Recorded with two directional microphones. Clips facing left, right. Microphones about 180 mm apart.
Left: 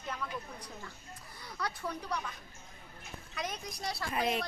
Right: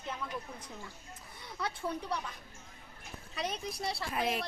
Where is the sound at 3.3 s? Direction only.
30° right (ahead or behind).